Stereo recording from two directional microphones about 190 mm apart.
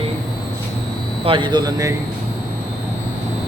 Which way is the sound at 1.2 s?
25° right (ahead or behind).